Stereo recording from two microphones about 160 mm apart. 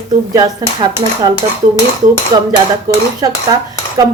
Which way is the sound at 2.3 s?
25° right (ahead or behind).